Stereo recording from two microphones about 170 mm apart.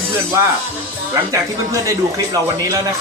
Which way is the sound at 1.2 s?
20° right (ahead or behind).